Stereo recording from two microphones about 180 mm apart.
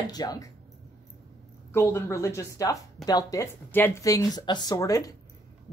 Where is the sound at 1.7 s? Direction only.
15° left (ahead or behind).